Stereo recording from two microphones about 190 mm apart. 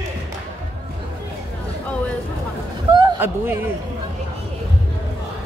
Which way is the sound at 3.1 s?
10° right (ahead or behind).